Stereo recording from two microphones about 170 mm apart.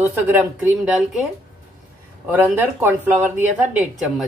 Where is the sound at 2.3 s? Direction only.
10° right (ahead or behind).